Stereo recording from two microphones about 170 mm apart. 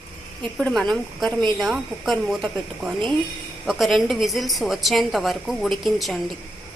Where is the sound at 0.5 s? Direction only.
5° left (ahead or behind).